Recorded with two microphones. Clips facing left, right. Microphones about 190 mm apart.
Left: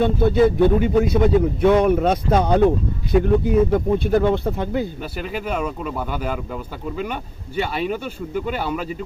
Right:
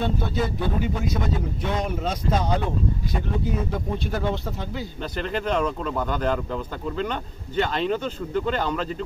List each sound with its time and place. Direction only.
0.2 s a man's voice: 60° left (ahead or behind)
5.1 s speech: 10° left (ahead or behind)